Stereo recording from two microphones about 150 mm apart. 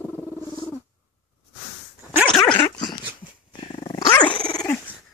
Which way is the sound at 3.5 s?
30° left (ahead or behind).